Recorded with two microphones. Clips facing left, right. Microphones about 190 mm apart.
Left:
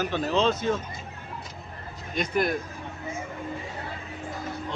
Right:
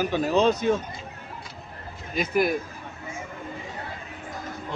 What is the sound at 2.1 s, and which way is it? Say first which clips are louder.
Speech: right 2 dB; 5° right (ahead or behind).